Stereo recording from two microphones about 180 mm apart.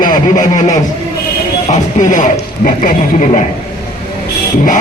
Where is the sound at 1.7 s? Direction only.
40° left (ahead or behind).